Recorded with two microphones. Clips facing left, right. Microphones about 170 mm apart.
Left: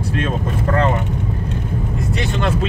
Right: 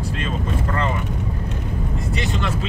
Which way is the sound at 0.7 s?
70° left (ahead or behind).